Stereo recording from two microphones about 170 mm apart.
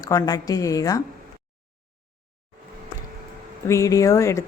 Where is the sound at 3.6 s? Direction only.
20° left (ahead or behind).